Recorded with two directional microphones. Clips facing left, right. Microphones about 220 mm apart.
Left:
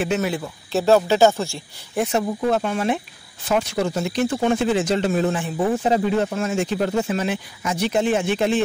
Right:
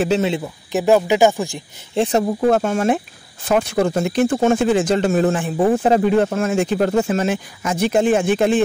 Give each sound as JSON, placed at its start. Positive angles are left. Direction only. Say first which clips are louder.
{"t": 0.4, "sound": "speech", "louder": "right 2 dB", "side_deg": -15}
{"t": 2.0, "sound": "speech", "louder": "right 4 dB", "side_deg": -35}
{"t": 2.4, "sound": "speech", "louder": "right 5 dB", "side_deg": -45}